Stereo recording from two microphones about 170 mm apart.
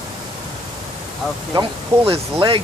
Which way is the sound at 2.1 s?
30° right (ahead or behind).